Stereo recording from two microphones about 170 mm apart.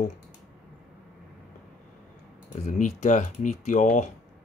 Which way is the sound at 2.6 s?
45° left (ahead or behind).